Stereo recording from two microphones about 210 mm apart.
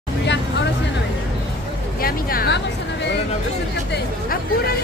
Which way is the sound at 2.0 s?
45° left (ahead or behind).